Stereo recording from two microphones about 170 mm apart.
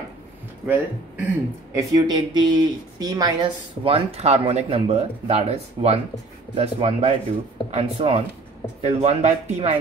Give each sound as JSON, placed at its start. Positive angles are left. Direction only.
{"t": 0.7, "sound": "speech", "side_deg": -10}